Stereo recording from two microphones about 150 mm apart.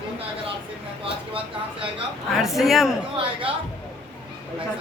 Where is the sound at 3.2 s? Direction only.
35° right (ahead or behind).